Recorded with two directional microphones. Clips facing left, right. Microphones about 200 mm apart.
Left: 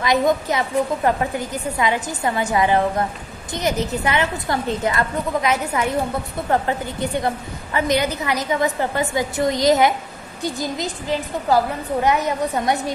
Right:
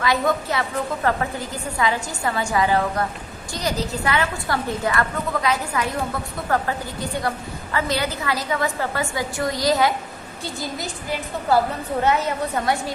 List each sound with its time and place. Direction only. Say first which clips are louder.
0.0 s a woman's voice: left 3 dB; 20° left (ahead or behind)